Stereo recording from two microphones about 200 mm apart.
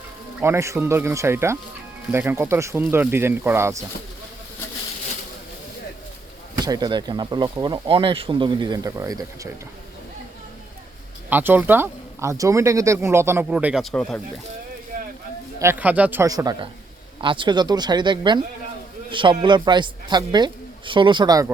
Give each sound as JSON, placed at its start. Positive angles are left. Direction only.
{"t": 0.3, "sound": "speech", "side_deg": -10}
{"t": 6.6, "sound": "speech", "side_deg": -20}
{"t": 11.3, "sound": "speech", "side_deg": -10}
{"t": 14.9, "sound": "a sound", "side_deg": -45}
{"t": 15.5, "sound": "speech", "side_deg": -10}